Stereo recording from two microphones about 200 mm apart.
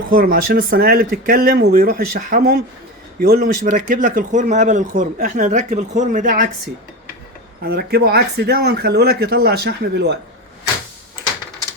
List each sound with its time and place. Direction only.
0.1 s speech: 45° right (ahead or behind)
7.6 s speech: 50° right (ahead or behind)